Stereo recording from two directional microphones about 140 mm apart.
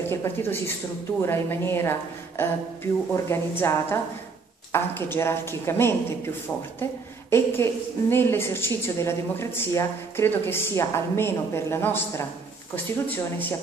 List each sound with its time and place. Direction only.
0.0 s a woman's voice: 15° left (ahead or behind)